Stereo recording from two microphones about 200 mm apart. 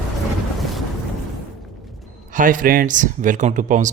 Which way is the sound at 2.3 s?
40° right (ahead or behind).